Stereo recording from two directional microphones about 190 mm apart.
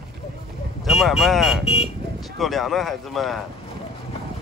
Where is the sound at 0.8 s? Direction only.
Centre (ahead or behind).